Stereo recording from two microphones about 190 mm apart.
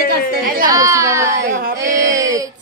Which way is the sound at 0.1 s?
55° right (ahead or behind).